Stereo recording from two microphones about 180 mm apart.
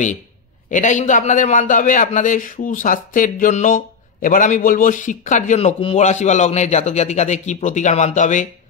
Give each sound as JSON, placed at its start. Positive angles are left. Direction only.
{"t": 0.7, "sound": "a man's voice", "side_deg": 40}